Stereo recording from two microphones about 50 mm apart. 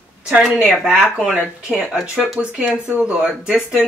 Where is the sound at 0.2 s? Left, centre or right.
Right.